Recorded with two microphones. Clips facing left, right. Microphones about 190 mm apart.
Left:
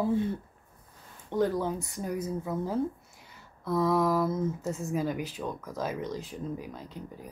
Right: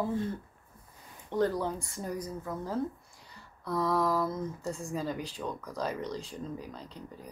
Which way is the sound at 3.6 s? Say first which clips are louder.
Left 4 dB; 5° left (ahead or behind).